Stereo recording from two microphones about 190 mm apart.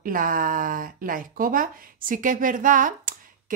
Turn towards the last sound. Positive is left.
turn(degrees=-45)  # may be behind; listen again after turning